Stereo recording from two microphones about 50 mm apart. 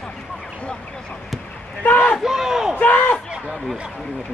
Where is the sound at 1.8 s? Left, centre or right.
Left.